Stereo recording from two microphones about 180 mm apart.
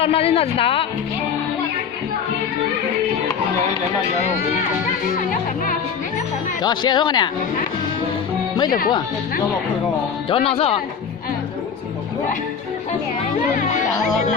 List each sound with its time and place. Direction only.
0.0 s a woman's voice: 30° left (ahead or behind)
6.6 s speech: 25° left (ahead or behind)
10.2 s a woman's voice: 30° left (ahead or behind)